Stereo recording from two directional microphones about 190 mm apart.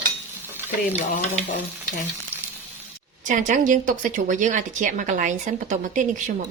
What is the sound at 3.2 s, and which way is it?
Speech, 45° right (ahead or behind).